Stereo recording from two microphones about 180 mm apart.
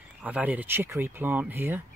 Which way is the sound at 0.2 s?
10° right (ahead or behind).